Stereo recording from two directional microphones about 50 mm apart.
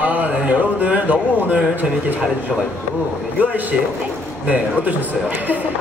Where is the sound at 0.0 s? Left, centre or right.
Right.